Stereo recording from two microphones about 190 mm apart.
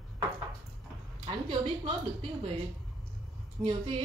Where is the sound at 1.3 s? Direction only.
25° right (ahead or behind).